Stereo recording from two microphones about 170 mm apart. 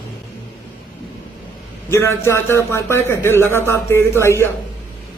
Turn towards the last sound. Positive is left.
turn(degrees=15)  # may be behind; listen again after turning